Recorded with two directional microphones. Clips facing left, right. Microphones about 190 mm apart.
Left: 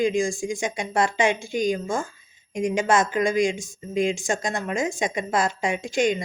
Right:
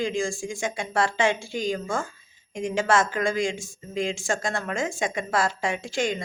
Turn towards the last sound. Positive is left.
turn(degrees=20)  # may be behind; listen again after turning